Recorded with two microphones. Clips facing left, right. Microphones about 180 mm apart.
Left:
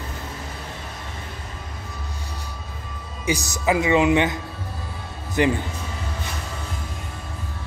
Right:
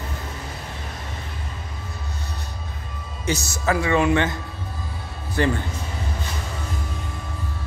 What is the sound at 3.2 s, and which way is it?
Speech, 15° left (ahead or behind).